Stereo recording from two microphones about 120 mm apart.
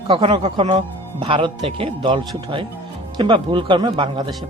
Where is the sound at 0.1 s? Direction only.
45° right (ahead or behind).